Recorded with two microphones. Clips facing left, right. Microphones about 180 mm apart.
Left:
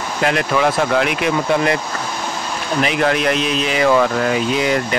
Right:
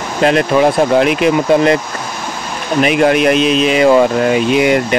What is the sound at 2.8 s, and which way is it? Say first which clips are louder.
Speech: right 7 dB; 20° right (ahead or behind).